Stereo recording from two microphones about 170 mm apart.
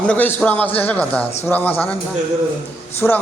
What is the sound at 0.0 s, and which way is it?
A man's voice, 10° left (ahead or behind).